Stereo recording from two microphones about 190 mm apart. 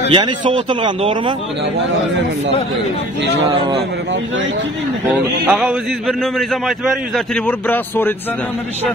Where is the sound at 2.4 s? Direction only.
75° right (ahead or behind).